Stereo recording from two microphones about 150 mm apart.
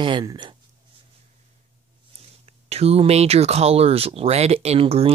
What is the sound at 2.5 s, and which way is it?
Speech, 40° right (ahead or behind).